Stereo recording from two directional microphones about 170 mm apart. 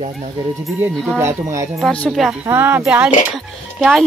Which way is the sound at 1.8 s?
5° left (ahead or behind).